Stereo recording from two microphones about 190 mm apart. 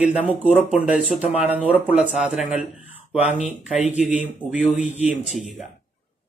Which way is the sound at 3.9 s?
5° right (ahead or behind).